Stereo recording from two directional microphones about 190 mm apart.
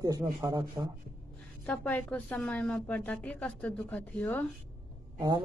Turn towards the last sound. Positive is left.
turn(degrees=-20)  # may be behind; listen again after turning